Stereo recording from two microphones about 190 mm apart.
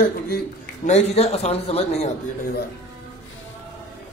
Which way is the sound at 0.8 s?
35° left (ahead or behind).